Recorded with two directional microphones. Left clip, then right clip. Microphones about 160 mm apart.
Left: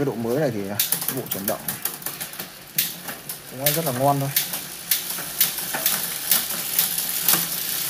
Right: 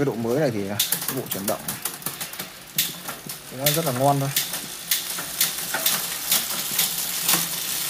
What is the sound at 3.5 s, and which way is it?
Speech, 10° right (ahead or behind).